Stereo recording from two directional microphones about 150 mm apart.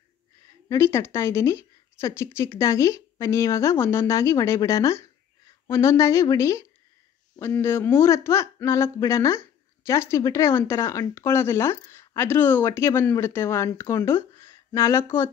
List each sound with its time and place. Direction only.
0.7 s a woman's voice: 15° left (ahead or behind)